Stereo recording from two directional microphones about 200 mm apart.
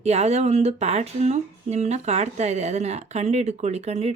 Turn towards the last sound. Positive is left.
turn(degrees=-35)  # may be behind; listen again after turning